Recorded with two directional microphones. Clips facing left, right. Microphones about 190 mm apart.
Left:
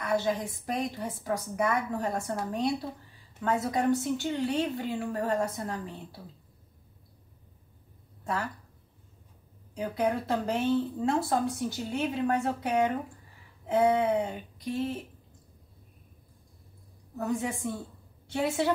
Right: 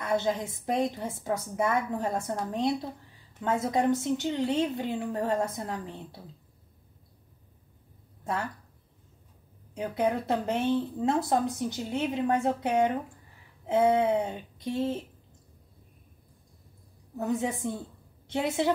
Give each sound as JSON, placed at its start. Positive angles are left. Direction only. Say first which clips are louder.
{"t": 0.0, "sound": "speech", "louder": "even", "side_deg": -25}
{"t": 3.4, "sound": "speech", "louder": "right 1 dB", "side_deg": -25}
{"t": 8.2, "sound": "a woman's voice", "louder": "right 1 dB", "side_deg": -20}
{"t": 9.8, "sound": "speech", "louder": "right 1 dB", "side_deg": -20}
{"t": 17.2, "sound": "speech", "louder": "right 2 dB", "side_deg": -20}